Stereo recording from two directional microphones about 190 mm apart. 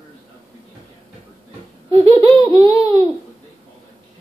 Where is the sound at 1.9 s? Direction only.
30° right (ahead or behind).